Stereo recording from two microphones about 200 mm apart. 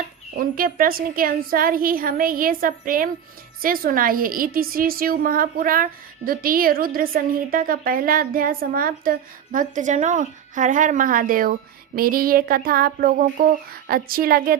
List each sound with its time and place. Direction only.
0.3 s a woman's voice: 45° right (ahead or behind)